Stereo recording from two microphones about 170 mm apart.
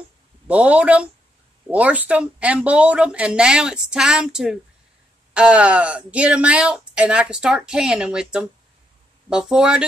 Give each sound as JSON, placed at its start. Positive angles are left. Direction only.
{"t": 0.5, "sound": "speech", "side_deg": -10}